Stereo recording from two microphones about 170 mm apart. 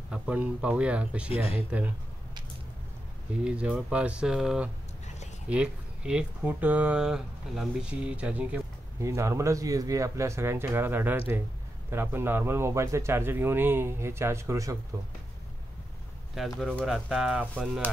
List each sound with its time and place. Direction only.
0.1 s speech: 5° right (ahead or behind)
3.4 s speech: 5° right (ahead or behind)
16.3 s speech: centre (ahead or behind)